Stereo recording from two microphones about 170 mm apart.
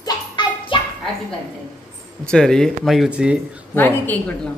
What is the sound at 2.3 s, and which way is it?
A man's voice, 5° left (ahead or behind).